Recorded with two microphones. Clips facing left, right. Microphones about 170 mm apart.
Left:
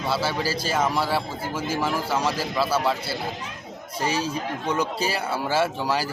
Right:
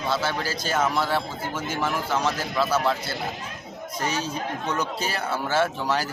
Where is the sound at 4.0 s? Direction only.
30° left (ahead or behind).